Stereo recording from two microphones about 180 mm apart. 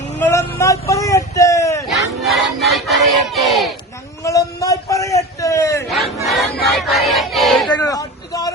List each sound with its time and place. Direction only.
0.2 s vehicle: 15° left (ahead or behind)
1.9 s music: centre (ahead or behind)
2.7 s battle cry: centre (ahead or behind)
4.2 s a sound: 20° left (ahead or behind)
6.2 s battle cry: centre (ahead or behind)
7.7 s a sound: 20° left (ahead or behind)